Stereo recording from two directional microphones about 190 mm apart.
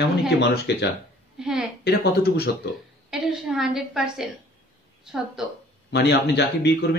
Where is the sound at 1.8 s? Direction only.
55° left (ahead or behind).